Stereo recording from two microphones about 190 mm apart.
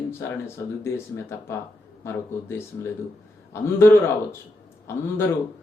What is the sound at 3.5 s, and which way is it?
Speech, 15° left (ahead or behind).